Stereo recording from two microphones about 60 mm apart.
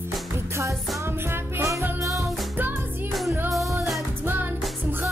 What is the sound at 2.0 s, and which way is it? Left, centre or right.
Music, right.